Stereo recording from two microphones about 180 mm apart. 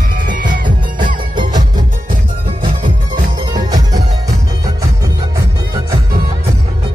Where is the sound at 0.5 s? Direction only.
25° right (ahead or behind).